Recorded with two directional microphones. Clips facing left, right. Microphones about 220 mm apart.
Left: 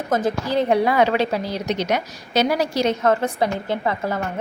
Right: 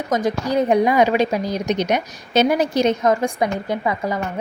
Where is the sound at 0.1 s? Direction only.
10° right (ahead or behind).